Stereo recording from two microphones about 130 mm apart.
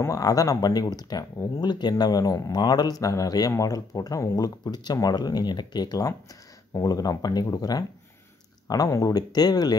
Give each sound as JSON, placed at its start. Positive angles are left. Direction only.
{"t": 0.0, "sound": "speech", "side_deg": 25}